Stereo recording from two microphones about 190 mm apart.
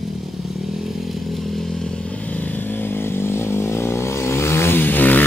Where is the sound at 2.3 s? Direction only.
10° left (ahead or behind).